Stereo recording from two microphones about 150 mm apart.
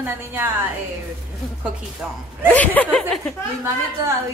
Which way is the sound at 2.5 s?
10° left (ahead or behind).